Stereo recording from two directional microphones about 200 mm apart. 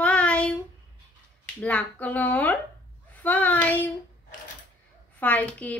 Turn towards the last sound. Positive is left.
turn(degrees=5)  # may be behind; listen again after turning